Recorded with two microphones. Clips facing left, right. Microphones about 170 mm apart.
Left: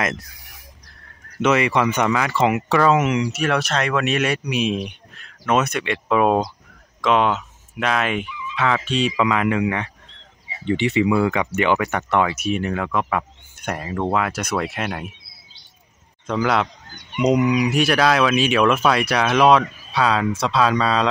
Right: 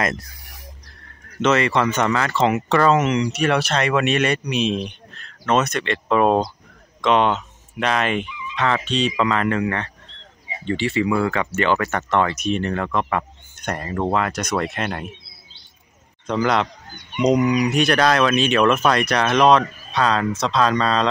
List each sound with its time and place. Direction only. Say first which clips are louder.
1.4 s speech: even; 10° left (ahead or behind)
16.3 s speech: even; 5° left (ahead or behind)